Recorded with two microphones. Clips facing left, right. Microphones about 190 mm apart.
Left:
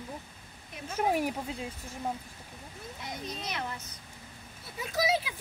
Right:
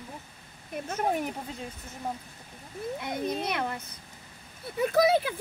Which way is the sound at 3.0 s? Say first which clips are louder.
Right 8 dB; 55° right (ahead or behind).